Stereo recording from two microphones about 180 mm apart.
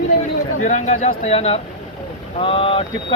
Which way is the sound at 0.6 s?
40° left (ahead or behind).